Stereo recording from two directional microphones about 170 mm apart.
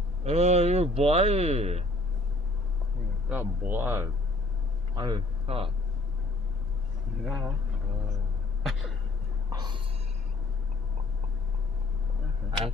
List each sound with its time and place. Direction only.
0.2 s speech: 40° right (ahead or behind)
3.3 s speech: 10° right (ahead or behind)
4.9 s a man's voice: 30° right (ahead or behind)
7.2 s speech: centre (ahead or behind)
9.5 s a sound: 25° right (ahead or behind)